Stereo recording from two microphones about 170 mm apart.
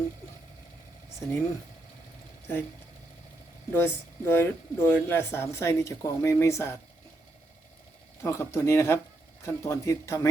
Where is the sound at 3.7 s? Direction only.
15° left (ahead or behind).